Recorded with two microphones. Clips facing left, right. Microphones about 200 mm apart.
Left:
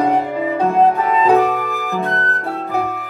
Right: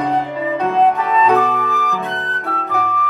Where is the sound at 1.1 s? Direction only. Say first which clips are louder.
Left 1 dB; 30° left (ahead or behind).